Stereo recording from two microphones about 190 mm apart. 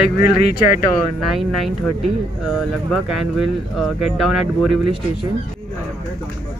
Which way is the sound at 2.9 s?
Centre (ahead or behind).